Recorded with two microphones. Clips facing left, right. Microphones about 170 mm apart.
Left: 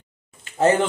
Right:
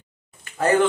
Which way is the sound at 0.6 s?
25° left (ahead or behind).